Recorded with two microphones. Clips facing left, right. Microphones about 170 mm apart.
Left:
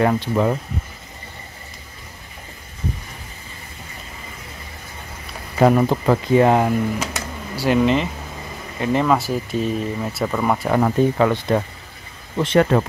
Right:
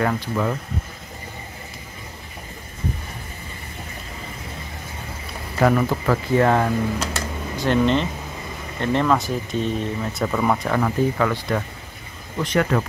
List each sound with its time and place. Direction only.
0.0 s speech: 25° left (ahead or behind)
5.6 s speech: 25° left (ahead or behind); by 10.7 s 5° left (ahead or behind)
10.7 s speech: 25° left (ahead or behind)